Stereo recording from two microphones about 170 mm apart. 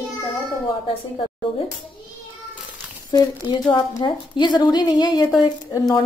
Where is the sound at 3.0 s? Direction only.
25° left (ahead or behind).